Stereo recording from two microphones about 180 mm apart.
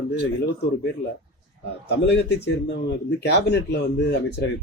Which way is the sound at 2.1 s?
75° left (ahead or behind).